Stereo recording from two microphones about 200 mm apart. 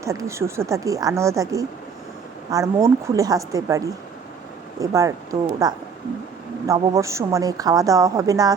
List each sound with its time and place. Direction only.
0.0 s a woman's voice: 15° right (ahead or behind)